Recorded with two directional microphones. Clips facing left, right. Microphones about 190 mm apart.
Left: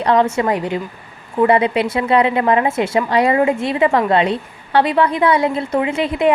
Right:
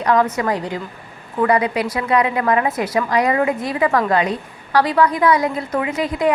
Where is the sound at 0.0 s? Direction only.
30° left (ahead or behind).